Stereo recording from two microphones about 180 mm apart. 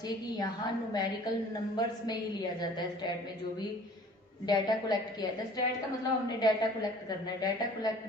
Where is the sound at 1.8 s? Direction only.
20° left (ahead or behind).